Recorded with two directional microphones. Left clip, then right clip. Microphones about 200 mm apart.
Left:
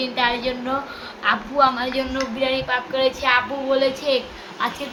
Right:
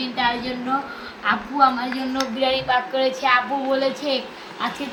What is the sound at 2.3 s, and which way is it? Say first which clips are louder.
A woman's voice: right 2 dB; 10° left (ahead or behind).